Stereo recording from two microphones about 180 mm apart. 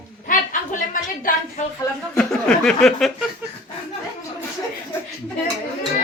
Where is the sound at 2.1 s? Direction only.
5° left (ahead or behind).